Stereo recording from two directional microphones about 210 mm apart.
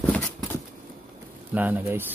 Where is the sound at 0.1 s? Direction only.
5° left (ahead or behind).